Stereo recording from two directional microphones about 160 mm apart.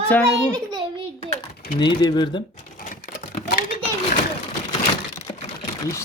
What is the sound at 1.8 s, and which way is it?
Speech, 25° left (ahead or behind).